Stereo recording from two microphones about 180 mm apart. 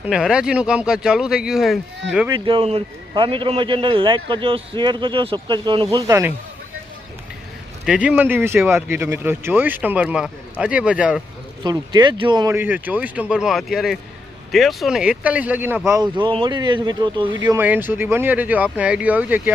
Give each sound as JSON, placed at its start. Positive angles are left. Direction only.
{"t": 0.1, "sound": "speech", "side_deg": -5}
{"t": 2.2, "sound": "a man's voice", "side_deg": -25}
{"t": 7.9, "sound": "speech", "side_deg": -5}
{"t": 11.6, "sound": "speech", "side_deg": -25}
{"t": 15.9, "sound": "a man's voice", "side_deg": -20}
{"t": 17.4, "sound": "speech", "side_deg": -10}